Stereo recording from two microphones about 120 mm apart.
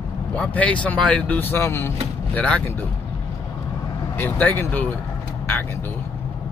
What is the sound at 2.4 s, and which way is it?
Speech, 10° left (ahead or behind).